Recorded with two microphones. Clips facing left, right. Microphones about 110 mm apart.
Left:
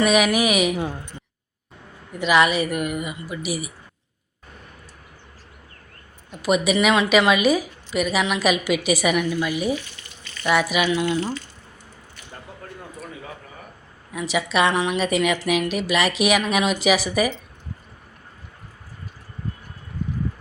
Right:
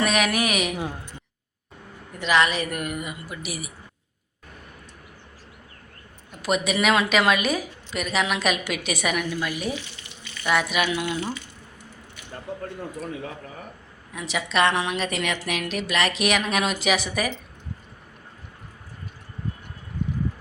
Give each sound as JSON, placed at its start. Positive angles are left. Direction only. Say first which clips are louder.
{"t": 0.0, "sound": "a woman's voice", "louder": "left 5 dB", "side_deg": 5}
{"t": 2.1, "sound": "a woman's voice", "louder": "left 3 dB", "side_deg": 10}
{"t": 6.4, "sound": "a woman's voice", "louder": "left 4 dB", "side_deg": 5}
{"t": 9.7, "sound": "water tap", "louder": "left 4 dB", "side_deg": -20}
{"t": 10.4, "sound": "a woman's voice", "louder": "left 3 dB", "side_deg": 5}
{"t": 14.1, "sound": "a woman's voice", "louder": "left 4 dB", "side_deg": 5}